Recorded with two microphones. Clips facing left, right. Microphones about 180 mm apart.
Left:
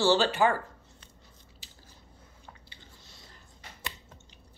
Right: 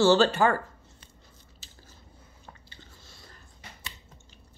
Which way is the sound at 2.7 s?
20° left (ahead or behind).